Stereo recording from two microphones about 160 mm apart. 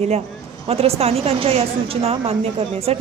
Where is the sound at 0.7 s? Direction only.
40° right (ahead or behind).